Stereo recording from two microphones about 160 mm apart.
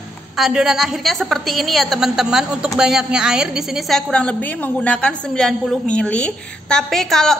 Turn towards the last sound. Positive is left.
turn(degrees=0)  # may be behind; listen again after turning